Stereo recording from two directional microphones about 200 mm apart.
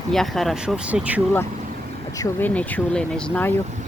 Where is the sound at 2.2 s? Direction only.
10° left (ahead or behind).